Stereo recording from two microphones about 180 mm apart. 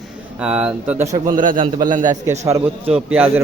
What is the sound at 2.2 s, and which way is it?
Speech, 40° right (ahead or behind).